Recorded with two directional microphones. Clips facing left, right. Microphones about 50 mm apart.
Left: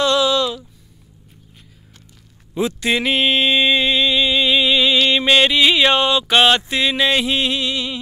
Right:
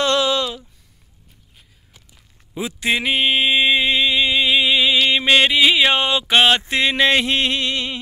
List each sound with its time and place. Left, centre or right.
0.0 s a sound: right
2.8 s mantra: centre
3.2 s mantra: centre
3.9 s music: right
6.0 s speech: right
6.7 s a sound: right
7.0 s music: right